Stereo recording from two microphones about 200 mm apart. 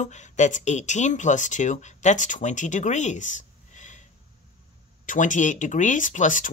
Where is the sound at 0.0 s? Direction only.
35° left (ahead or behind).